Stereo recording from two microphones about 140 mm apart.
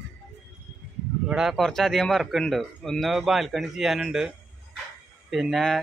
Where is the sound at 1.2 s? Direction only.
5° right (ahead or behind).